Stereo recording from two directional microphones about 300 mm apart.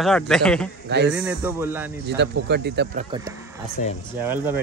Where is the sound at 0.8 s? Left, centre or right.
Right.